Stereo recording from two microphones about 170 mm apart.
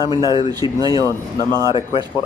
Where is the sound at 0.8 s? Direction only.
25° right (ahead or behind).